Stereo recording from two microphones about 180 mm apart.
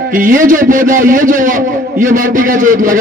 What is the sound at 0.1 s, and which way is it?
A man's voice, 50° right (ahead or behind).